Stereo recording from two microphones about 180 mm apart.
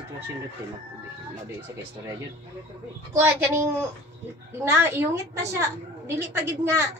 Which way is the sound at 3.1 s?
10° right (ahead or behind).